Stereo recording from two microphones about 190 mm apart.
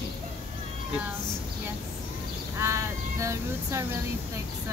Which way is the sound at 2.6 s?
15° right (ahead or behind).